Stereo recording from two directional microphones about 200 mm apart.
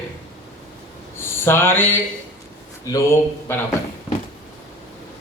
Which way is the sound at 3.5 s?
10° left (ahead or behind).